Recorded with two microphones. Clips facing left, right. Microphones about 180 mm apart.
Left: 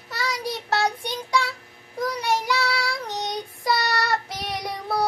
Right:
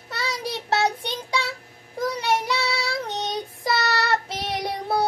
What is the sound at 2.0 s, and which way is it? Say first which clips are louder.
Child singing: right 1 dB; 25° right (ahead or behind).